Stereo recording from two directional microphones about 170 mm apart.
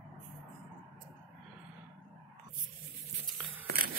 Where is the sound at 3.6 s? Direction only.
60° right (ahead or behind).